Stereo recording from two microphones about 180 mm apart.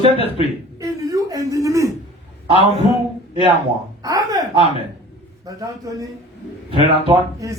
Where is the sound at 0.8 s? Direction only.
20° right (ahead or behind).